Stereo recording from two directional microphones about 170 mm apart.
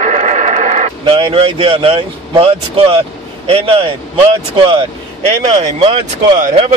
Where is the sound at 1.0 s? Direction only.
30° right (ahead or behind).